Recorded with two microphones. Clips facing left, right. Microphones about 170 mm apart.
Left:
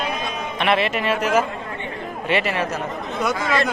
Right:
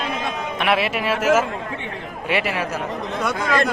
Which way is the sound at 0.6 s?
5° right (ahead or behind).